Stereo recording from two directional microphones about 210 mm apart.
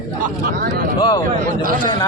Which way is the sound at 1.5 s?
40° right (ahead or behind).